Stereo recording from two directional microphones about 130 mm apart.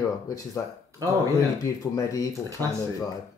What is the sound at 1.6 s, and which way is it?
Speech, 25° left (ahead or behind).